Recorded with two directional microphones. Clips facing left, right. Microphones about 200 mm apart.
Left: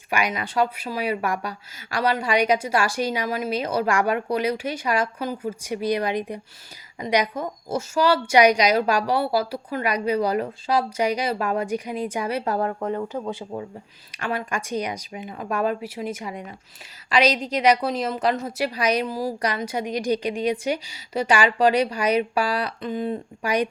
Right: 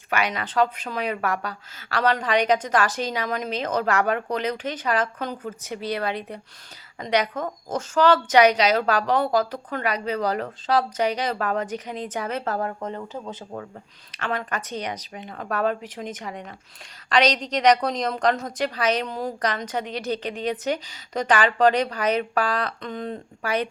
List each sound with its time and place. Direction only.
0.1 s a woman's voice: 10° left (ahead or behind)